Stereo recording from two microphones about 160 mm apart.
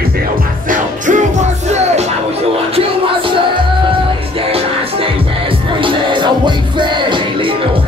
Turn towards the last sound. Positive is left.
turn(degrees=-30)  # may be behind; listen again after turning